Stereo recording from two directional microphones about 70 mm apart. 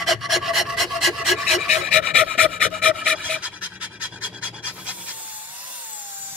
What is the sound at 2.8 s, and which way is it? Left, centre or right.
Dog, centre.